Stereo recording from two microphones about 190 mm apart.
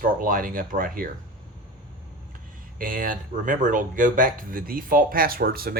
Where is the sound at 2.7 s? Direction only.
45° right (ahead or behind).